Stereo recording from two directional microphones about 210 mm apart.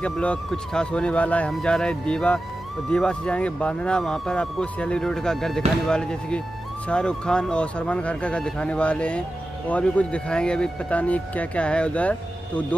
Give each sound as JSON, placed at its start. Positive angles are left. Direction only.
{"t": 0.0, "sound": "speech", "side_deg": 5}